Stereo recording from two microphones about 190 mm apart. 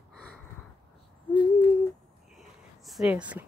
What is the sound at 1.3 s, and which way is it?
Owl, 25° left (ahead or behind).